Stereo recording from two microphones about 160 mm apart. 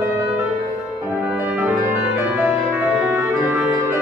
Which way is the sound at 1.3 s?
10° right (ahead or behind).